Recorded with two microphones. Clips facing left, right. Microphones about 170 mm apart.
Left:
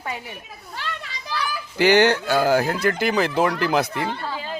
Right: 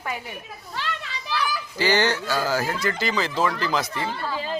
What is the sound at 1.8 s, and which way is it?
Speech, 60° left (ahead or behind).